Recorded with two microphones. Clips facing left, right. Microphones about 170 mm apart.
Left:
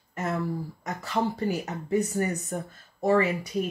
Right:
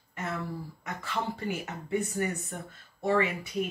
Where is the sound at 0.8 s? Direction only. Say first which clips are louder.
Left 6 dB; 40° left (ahead or behind).